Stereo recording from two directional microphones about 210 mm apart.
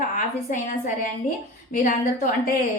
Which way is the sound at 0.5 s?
40° left (ahead or behind).